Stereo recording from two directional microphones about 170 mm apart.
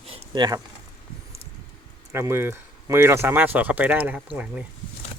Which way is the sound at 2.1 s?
15° right (ahead or behind).